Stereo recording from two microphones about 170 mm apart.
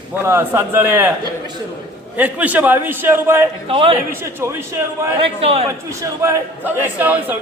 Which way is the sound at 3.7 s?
30° right (ahead or behind).